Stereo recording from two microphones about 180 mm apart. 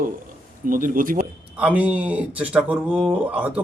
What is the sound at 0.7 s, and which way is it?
Speech, 50° right (ahead or behind).